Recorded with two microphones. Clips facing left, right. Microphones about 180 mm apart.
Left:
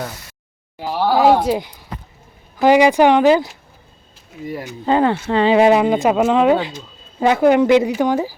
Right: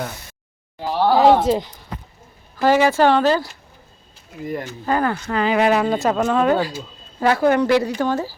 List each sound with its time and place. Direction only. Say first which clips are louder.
0.8 s speech: even; 10° left (ahead or behind)
4.4 s speech: right 1 dB; 5° left (ahead or behind)
4.9 s speech: left 5 dB; 25° left (ahead or behind)